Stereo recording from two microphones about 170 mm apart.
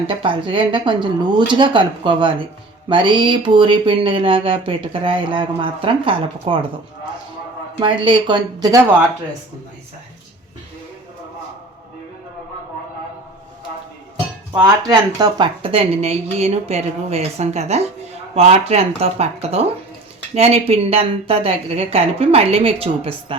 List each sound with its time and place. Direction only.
0.1 s a woman's voice: 30° right (ahead or behind)
7.8 s a woman's voice: 30° right (ahead or behind)
14.6 s a woman's voice: 25° right (ahead or behind)
15.6 s speech: 35° right (ahead or behind)